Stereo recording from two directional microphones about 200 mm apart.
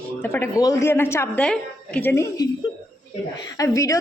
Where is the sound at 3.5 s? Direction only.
15° left (ahead or behind).